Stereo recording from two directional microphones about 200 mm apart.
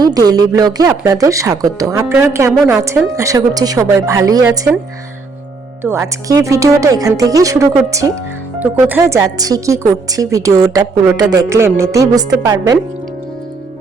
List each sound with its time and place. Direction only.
0.0 s speech: 20° right (ahead or behind)
5.8 s speech: 15° right (ahead or behind)